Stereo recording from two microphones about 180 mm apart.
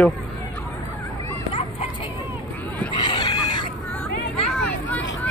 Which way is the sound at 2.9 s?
25° left (ahead or behind).